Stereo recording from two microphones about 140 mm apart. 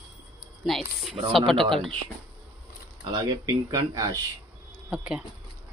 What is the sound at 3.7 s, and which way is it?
Speech, 25° right (ahead or behind).